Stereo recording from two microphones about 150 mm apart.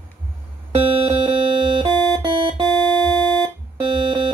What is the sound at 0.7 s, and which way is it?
Music, 35° right (ahead or behind).